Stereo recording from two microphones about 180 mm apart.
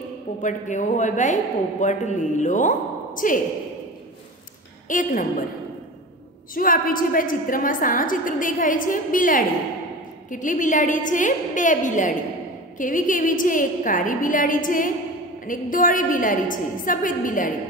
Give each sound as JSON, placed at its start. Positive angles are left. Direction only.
{"t": 0.4, "sound": "a man's voice", "side_deg": 45}
{"t": 4.8, "sound": "a woman's voice", "side_deg": 45}
{"t": 6.5, "sound": "a man's voice", "side_deg": 50}